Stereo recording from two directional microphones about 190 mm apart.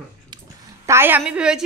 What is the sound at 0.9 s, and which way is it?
Speech, 10° right (ahead or behind).